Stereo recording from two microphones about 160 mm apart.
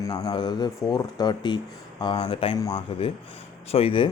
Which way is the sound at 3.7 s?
35° left (ahead or behind).